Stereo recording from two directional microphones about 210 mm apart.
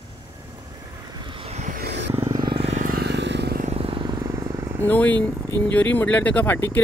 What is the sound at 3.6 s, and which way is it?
Vehicle, 30° right (ahead or behind).